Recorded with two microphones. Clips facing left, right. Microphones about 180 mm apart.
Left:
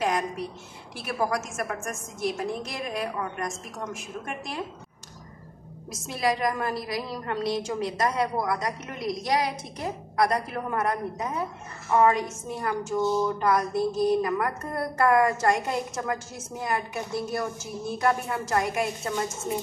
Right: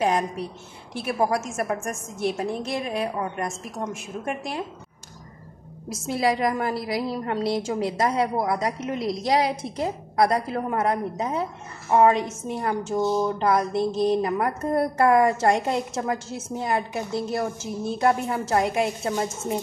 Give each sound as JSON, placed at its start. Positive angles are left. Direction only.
{"t": 0.9, "sound": "a woman's voice", "side_deg": -25}
{"t": 6.1, "sound": "a woman's voice", "side_deg": -30}